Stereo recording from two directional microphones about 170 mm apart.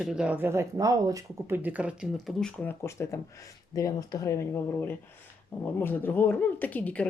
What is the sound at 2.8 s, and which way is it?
Speech, 15° left (ahead or behind).